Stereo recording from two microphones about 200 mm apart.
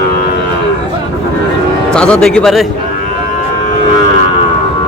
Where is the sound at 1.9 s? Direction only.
5° left (ahead or behind).